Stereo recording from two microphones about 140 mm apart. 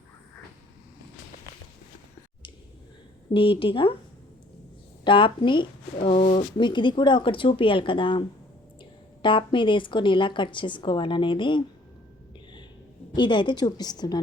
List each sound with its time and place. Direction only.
3.3 s speech: 40° left (ahead or behind)
5.0 s speech: 35° left (ahead or behind)
6.6 s speech: 35° left (ahead or behind)
13.1 s a woman's voice: 35° left (ahead or behind)